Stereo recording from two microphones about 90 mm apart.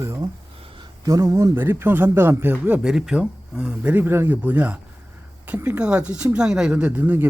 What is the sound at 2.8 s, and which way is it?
Speech, 5° right (ahead or behind).